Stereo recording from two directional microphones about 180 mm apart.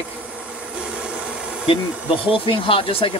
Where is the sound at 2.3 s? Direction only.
30° left (ahead or behind).